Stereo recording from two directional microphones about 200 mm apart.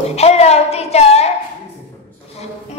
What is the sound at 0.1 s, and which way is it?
Child singing, 30° left (ahead or behind).